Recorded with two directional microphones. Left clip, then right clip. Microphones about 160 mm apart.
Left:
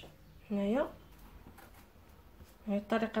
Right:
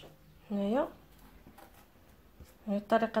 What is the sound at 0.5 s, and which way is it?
Speech, 35° right (ahead or behind).